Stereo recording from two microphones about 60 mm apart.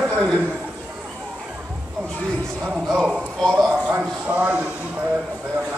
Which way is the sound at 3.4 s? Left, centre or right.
Centre.